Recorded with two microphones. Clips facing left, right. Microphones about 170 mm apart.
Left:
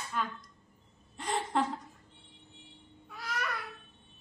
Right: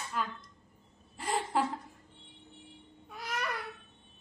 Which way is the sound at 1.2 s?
5° right (ahead or behind).